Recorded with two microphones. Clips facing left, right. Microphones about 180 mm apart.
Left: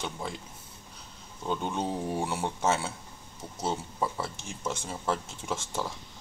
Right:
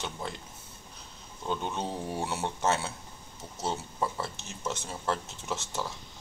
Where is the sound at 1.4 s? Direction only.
10° left (ahead or behind).